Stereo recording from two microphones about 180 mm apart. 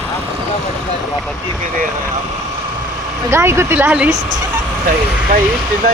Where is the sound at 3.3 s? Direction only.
15° right (ahead or behind).